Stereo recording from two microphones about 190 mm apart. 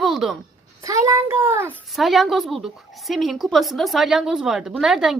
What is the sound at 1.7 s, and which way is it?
A woman's voice, centre (ahead or behind).